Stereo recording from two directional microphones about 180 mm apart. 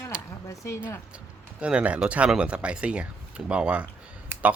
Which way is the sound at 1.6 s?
5° right (ahead or behind).